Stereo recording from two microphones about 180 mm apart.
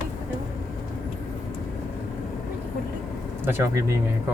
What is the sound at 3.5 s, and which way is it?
Speech, 15° right (ahead or behind).